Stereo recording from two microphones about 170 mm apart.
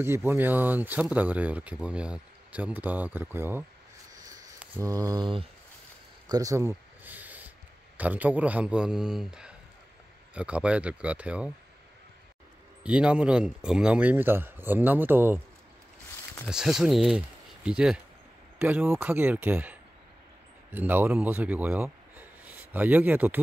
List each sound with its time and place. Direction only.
0.0 s speech: 15° right (ahead or behind)
4.2 s a sound: 20° right (ahead or behind)
4.6 s speech: 15° right (ahead or behind)
6.2 s a sound: 20° right (ahead or behind)
8.0 s a man's voice: 10° right (ahead or behind)
12.8 s speech: 5° right (ahead or behind)
16.4 s a man's voice: 5° right (ahead or behind)